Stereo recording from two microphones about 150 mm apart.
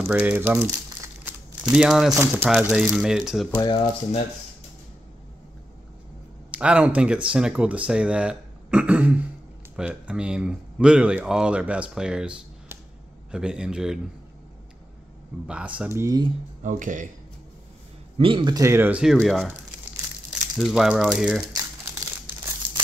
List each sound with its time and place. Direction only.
0.0 s speech: 10° right (ahead or behind)
3.6 s speech: 30° left (ahead or behind)
6.5 s speech: 10° right (ahead or behind)
15.4 s speech: 10° right (ahead or behind)
16.6 s speech: 60° right (ahead or behind)
18.1 s a man's voice: 35° right (ahead or behind)
18.6 s speech: 15° right (ahead or behind); by 19.5 s centre (ahead or behind)
20.5 s speech: centre (ahead or behind)